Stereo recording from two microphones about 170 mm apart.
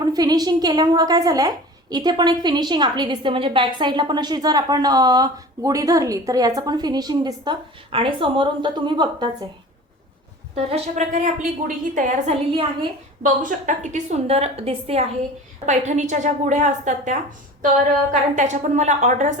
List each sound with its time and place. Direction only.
0.0 s a woman's voice: 25° right (ahead or behind)
10.5 s a woman's voice: 40° right (ahead or behind)
13.2 s a woman's voice: 50° right (ahead or behind)